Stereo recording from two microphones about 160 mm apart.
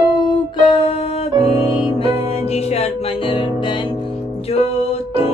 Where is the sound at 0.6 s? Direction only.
40° left (ahead or behind).